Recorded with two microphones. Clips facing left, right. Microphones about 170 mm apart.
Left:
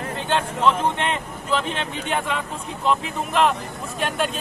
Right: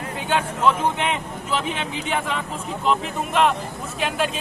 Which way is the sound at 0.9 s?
5° right (ahead or behind).